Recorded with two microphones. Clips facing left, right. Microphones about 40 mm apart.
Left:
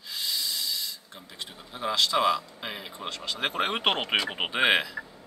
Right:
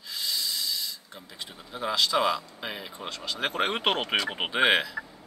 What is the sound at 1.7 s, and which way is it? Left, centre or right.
Speech, centre.